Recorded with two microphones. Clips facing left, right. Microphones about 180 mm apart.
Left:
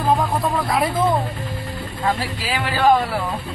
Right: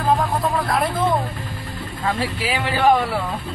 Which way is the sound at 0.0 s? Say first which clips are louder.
Even; centre (ahead or behind).